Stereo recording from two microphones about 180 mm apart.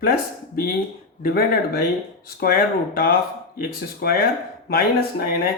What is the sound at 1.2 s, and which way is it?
Speech, 55° left (ahead or behind).